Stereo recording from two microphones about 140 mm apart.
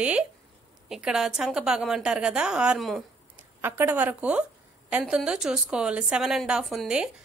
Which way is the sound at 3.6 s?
15° right (ahead or behind).